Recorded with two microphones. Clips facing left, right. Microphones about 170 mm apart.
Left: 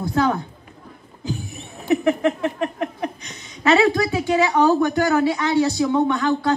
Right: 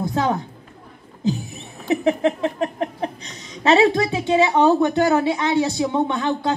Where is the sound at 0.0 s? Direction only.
20° right (ahead or behind).